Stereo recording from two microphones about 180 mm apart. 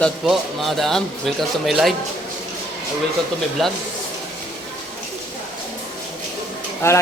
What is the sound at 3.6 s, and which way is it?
Speech, centre (ahead or behind).